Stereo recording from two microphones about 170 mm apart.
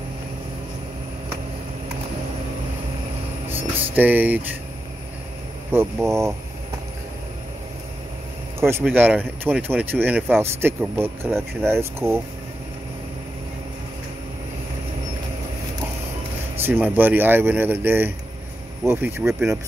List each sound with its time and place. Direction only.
3.4 s a sound: 10° right (ahead or behind)
5.7 s speech: 15° right (ahead or behind)
8.5 s speech: 15° right (ahead or behind)
16.5 s speech: 10° right (ahead or behind)